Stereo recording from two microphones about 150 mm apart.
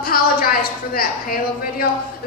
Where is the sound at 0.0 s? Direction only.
75° left (ahead or behind).